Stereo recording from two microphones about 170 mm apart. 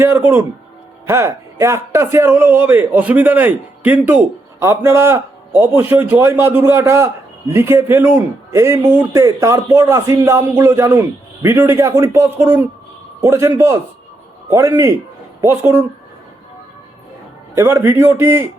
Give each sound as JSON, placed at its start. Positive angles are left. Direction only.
{"t": 0.0, "sound": "a man's voice", "side_deg": -15}
{"t": 17.5, "sound": "a man's voice", "side_deg": -15}